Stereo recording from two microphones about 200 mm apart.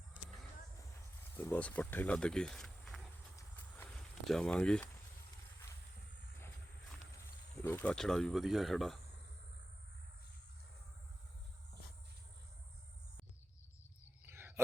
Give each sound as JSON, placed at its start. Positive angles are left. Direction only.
{"t": 1.4, "sound": "speech", "side_deg": 10}
{"t": 3.3, "sound": "clip-clop", "side_deg": 10}
{"t": 4.3, "sound": "speech", "side_deg": 5}
{"t": 7.6, "sound": "speech", "side_deg": 10}
{"t": 14.3, "sound": "a sound", "side_deg": -10}